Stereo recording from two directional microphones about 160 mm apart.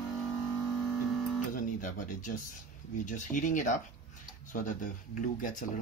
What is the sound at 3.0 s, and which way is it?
Speech, 55° left (ahead or behind).